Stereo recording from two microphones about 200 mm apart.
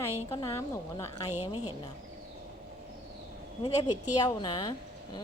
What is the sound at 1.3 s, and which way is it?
Speech, 35° left (ahead or behind).